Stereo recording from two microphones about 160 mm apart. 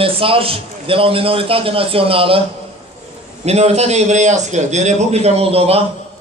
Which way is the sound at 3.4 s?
40° right (ahead or behind).